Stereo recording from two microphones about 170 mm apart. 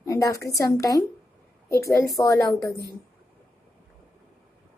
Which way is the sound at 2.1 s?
20° left (ahead or behind).